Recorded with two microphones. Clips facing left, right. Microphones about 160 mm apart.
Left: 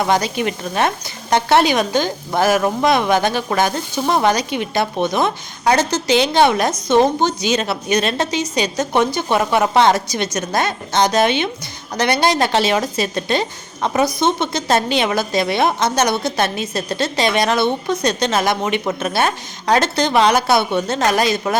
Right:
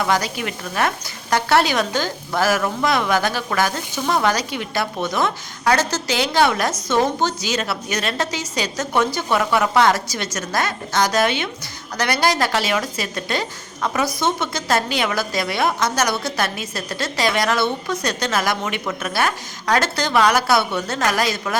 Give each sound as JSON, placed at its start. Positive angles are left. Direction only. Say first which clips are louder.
{"t": 0.0, "sound": "a woman's voice", "louder": "left 4 dB", "side_deg": 25}